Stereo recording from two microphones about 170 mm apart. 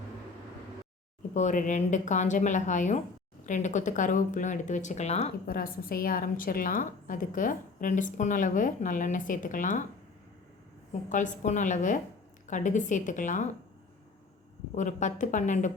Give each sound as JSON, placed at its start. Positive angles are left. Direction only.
{"t": 1.3, "sound": "a woman's voice", "side_deg": 45}
{"t": 5.5, "sound": "a woman's voice", "side_deg": 60}
{"t": 11.1, "sound": "a woman's voice", "side_deg": 50}
{"t": 14.8, "sound": "a woman's voice", "side_deg": 45}